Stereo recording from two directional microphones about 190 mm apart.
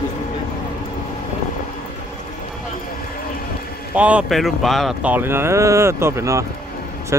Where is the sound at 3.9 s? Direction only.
5° right (ahead or behind).